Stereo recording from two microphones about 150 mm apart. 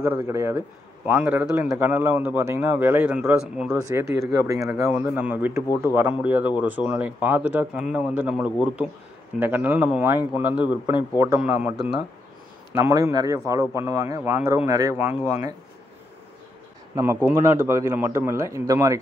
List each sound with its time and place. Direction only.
0.0 s a man's voice: 15° right (ahead or behind)
3.7 s a man's voice: 15° right (ahead or behind)
12.7 s speech: 20° right (ahead or behind)
16.9 s speech: 20° right (ahead or behind)